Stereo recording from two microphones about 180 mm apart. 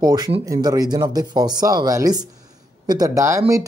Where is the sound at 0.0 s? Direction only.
20° right (ahead or behind).